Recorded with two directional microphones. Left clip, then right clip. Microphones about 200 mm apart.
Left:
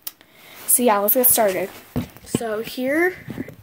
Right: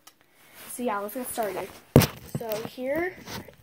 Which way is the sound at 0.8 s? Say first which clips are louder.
Left 12 dB; 40° left (ahead or behind).